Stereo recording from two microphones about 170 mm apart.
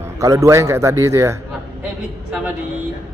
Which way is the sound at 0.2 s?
20° right (ahead or behind).